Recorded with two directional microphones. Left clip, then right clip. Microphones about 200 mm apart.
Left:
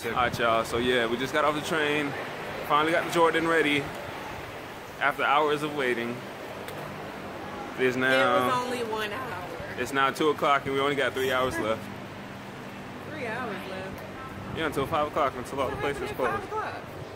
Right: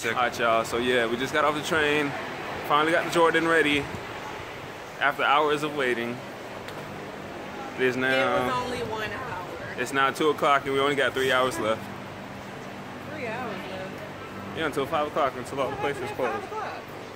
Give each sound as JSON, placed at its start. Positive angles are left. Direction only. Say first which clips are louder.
{"t": 0.1, "sound": "speech", "louder": "right 1 dB", "side_deg": 5}
{"t": 5.0, "sound": "speech", "louder": "right 2 dB", "side_deg": -10}
{"t": 7.8, "sound": "speech", "louder": "even", "side_deg": 5}
{"t": 8.5, "sound": "music", "louder": "left 1 dB", "side_deg": 30}
{"t": 9.8, "sound": "speech", "louder": "right 1 dB", "side_deg": 0}
{"t": 14.6, "sound": "speech", "louder": "right 1 dB", "side_deg": -5}